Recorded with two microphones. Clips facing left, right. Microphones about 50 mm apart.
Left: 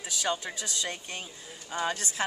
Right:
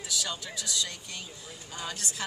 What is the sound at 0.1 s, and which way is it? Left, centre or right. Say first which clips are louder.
A woman's voice: left 4 dB; left.